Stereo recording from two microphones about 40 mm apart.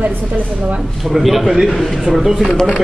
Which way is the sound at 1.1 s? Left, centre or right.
Centre.